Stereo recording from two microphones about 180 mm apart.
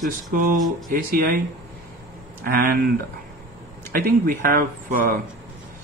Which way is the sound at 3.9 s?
50° right (ahead or behind).